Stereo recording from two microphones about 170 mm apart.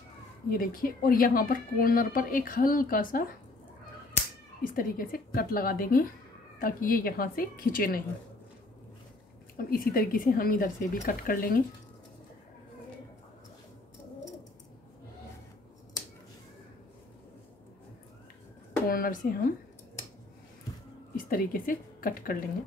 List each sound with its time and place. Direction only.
0.5 s a woman's voice: 60° left (ahead or behind)
4.6 s a woman's voice: 55° left (ahead or behind)
9.6 s a woman's voice: 60° left (ahead or behind)
18.9 s speech: 60° left (ahead or behind)
21.2 s a woman's voice: 55° left (ahead or behind)